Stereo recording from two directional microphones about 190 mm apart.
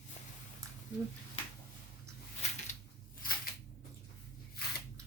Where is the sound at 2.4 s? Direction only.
35° left (ahead or behind).